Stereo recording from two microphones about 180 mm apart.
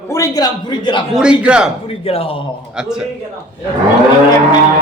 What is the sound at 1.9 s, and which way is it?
Speech, 30° left (ahead or behind).